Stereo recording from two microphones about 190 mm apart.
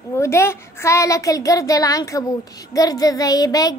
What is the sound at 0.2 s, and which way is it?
A woman's voice, 15° left (ahead or behind).